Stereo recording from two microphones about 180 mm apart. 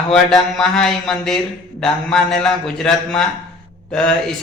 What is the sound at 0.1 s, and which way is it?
Speech, centre (ahead or behind).